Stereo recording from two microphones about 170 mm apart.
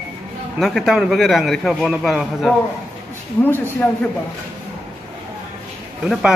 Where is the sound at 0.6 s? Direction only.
Centre (ahead or behind).